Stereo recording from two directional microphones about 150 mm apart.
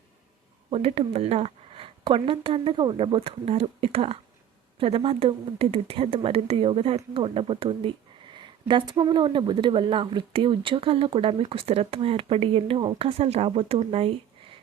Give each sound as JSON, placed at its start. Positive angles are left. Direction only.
{"t": 0.7, "sound": "speech", "side_deg": -40}